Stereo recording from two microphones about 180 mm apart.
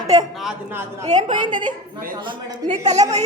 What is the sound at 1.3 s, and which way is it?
A woman's voice, 25° right (ahead or behind).